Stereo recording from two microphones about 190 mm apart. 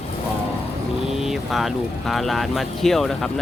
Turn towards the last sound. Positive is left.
turn(degrees=0)  # may be behind; listen again after turning